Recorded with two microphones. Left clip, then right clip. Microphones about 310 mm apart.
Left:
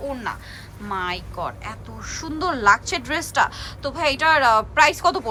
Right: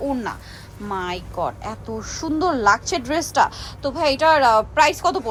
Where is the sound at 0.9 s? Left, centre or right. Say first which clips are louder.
Even; centre.